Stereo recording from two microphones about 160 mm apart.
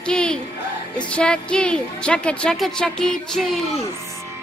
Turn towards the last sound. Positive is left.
turn(degrees=5)  # may be behind; listen again after turning